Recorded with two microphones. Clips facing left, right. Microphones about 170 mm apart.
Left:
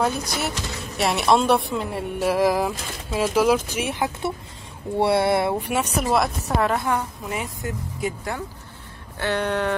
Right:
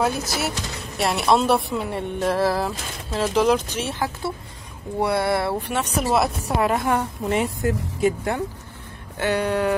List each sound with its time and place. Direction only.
0.0 s speech: 5° right (ahead or behind)
6.0 s speech: 5° right (ahead or behind); by 8.4 s 25° right (ahead or behind)
9.2 s speech: 10° right (ahead or behind)